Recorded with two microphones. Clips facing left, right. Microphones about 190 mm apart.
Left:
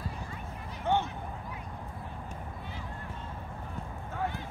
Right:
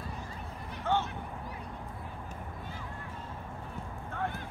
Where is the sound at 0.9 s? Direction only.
15° left (ahead or behind).